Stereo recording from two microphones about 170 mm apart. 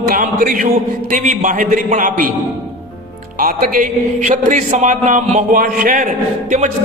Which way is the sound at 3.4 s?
55° right (ahead or behind).